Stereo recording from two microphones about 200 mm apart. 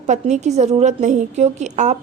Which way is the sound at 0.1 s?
35° right (ahead or behind).